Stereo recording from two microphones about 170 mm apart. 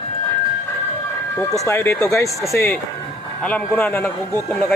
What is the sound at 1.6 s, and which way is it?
Speech, 15° left (ahead or behind).